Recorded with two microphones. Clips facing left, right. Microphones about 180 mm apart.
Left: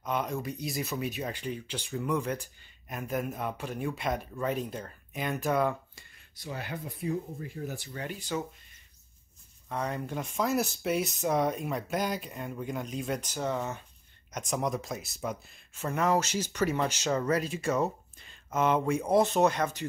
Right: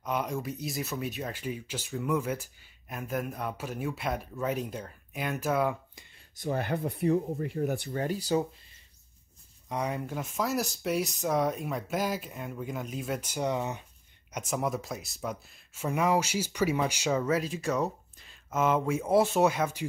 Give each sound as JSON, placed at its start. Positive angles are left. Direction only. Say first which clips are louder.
{"t": 0.0, "sound": "speech", "louder": "even", "side_deg": -10}
{"t": 6.4, "sound": "speech", "louder": "right 8 dB", "side_deg": -50}
{"t": 7.9, "sound": "speech", "louder": "right 4 dB", "side_deg": -40}
{"t": 9.7, "sound": "speech", "louder": "right 1 dB", "side_deg": -10}
{"t": 14.3, "sound": "speech", "louder": "even", "side_deg": -5}